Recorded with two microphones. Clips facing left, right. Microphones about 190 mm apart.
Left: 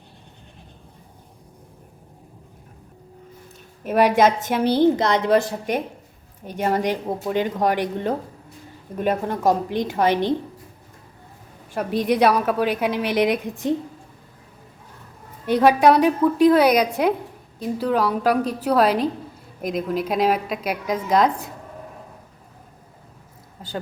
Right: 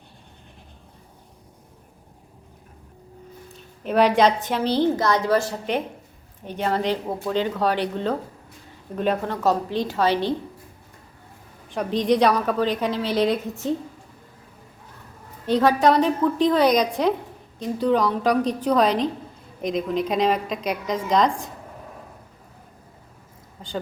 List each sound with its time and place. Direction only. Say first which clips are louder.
3.8 s a woman's voice: left 1 dB; 5° left (ahead or behind)
11.7 s a woman's voice: even; 10° left (ahead or behind)
15.4 s a woman's voice: left 3 dB; 10° left (ahead or behind)